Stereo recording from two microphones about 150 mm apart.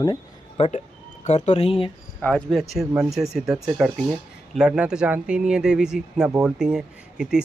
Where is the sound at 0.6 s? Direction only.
50° left (ahead or behind).